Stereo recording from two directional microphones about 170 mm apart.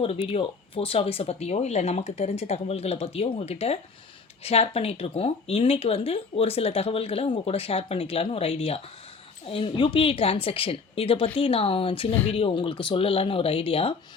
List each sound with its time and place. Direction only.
0.0 s speech: 35° left (ahead or behind)